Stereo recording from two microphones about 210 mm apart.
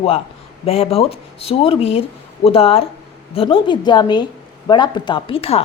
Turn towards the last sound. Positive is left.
turn(degrees=25)  # may be behind; listen again after turning